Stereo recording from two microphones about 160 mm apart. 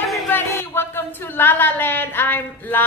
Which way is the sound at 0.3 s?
15° left (ahead or behind).